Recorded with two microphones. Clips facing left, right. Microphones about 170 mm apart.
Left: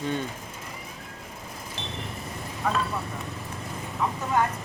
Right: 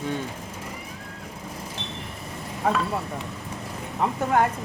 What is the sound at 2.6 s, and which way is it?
Speech, 55° right (ahead or behind).